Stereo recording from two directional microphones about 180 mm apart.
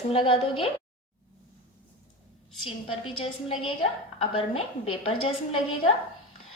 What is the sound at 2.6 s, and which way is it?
A woman's voice, 30° left (ahead or behind).